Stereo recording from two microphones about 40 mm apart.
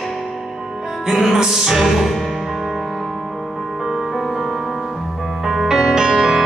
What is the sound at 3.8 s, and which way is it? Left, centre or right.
Music, centre.